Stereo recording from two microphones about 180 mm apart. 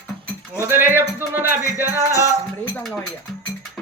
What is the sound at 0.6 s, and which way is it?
Speech, 10° right (ahead or behind).